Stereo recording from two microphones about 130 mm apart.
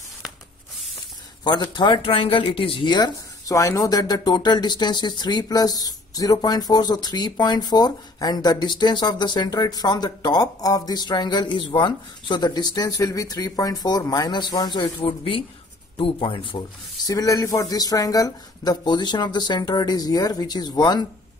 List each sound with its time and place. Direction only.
1.4 s speech: 35° left (ahead or behind)
15.0 s speech: 45° left (ahead or behind)